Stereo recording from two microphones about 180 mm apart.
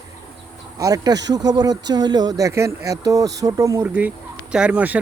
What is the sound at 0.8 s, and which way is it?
Speech, 20° right (ahead or behind).